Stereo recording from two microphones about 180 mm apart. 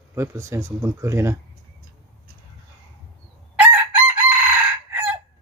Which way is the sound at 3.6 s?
5° right (ahead or behind).